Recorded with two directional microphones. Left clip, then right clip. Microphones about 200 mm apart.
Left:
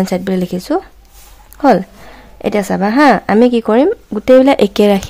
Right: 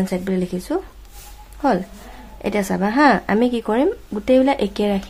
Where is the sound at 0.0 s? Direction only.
40° left (ahead or behind).